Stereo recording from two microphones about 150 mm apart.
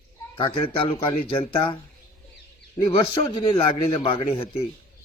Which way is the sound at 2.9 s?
30° left (ahead or behind).